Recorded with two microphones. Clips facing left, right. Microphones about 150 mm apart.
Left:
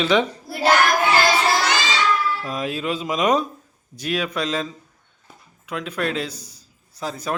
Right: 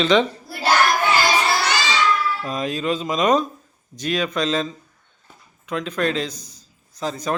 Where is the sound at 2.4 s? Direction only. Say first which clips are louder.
Right 1 dB; 5° left (ahead or behind).